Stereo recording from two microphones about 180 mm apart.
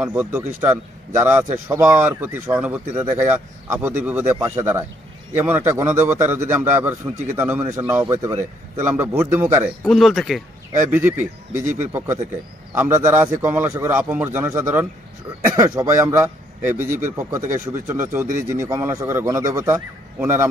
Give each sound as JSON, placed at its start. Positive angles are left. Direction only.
{"t": 0.0, "sound": "speech", "side_deg": -10}
{"t": 7.8, "sound": "speech", "side_deg": -20}
{"t": 9.8, "sound": "speech", "side_deg": 0}
{"t": 11.5, "sound": "speech", "side_deg": -45}
{"t": 12.7, "sound": "speech", "side_deg": -15}
{"t": 17.4, "sound": "speech", "side_deg": -45}
{"t": 18.7, "sound": "speech", "side_deg": -15}